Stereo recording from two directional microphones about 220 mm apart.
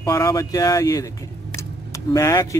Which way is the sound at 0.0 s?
15° left (ahead or behind).